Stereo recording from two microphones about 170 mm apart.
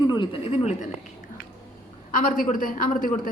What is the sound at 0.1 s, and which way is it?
Speech, 30° left (ahead or behind).